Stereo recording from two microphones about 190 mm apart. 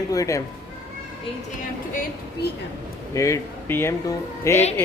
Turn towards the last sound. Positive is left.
turn(degrees=15)  # may be behind; listen again after turning